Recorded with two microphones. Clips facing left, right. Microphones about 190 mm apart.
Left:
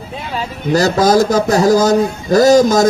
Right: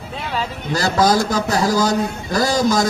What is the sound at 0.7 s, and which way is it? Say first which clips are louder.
A man's voice: left 5 dB; 45° left (ahead or behind).